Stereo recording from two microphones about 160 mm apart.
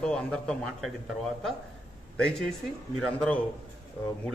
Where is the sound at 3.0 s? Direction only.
5° left (ahead or behind).